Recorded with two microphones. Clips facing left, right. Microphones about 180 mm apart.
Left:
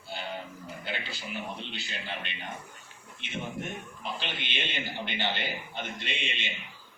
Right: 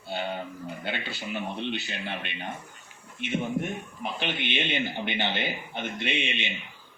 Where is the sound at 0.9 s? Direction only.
60° right (ahead or behind).